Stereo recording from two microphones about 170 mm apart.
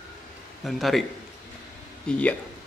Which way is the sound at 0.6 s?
Centre (ahead or behind).